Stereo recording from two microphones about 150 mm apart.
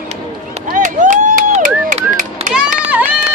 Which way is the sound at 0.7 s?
60° right (ahead or behind).